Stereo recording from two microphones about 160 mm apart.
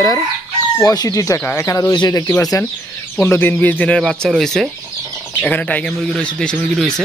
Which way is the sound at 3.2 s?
10° left (ahead or behind).